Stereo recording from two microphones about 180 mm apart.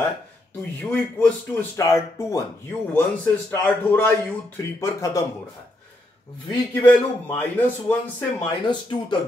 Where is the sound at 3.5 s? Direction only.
15° left (ahead or behind).